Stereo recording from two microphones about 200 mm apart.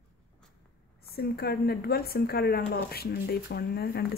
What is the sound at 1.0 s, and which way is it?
Speech, 50° left (ahead or behind).